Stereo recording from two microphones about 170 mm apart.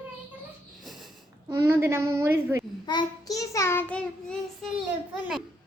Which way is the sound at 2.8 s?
25° left (ahead or behind).